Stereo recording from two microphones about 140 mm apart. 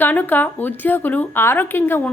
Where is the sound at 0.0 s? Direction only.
15° left (ahead or behind).